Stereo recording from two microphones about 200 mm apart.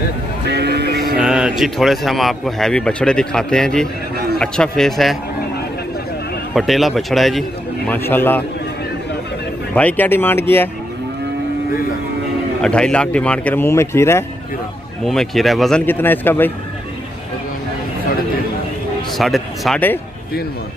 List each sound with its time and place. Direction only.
0.5 s a sound: 55° right (ahead or behind)
1.1 s speech: 5° right (ahead or behind)
6.5 s speech: centre (ahead or behind)
9.8 s speech: 10° left (ahead or behind)
12.6 s speech: 5° left (ahead or behind)
15.0 s speech: centre (ahead or behind)
19.1 s speech: centre (ahead or behind)